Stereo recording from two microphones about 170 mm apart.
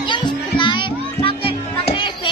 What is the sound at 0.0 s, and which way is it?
Music, 30° left (ahead or behind).